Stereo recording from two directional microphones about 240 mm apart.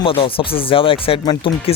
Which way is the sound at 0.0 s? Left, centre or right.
Left.